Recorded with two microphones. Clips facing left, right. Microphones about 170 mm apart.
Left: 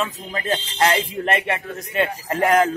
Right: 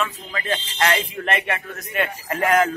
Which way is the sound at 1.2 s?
30° left (ahead or behind).